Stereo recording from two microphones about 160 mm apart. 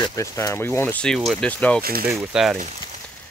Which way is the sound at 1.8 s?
70° right (ahead or behind).